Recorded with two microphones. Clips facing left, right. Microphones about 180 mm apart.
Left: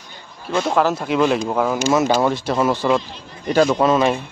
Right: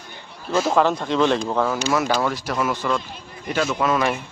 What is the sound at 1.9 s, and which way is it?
Speech, 20° left (ahead or behind).